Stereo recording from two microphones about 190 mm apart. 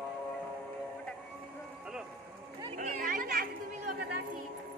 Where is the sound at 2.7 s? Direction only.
45° right (ahead or behind).